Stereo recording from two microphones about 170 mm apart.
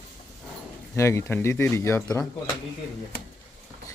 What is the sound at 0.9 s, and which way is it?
Speech, 15° left (ahead or behind).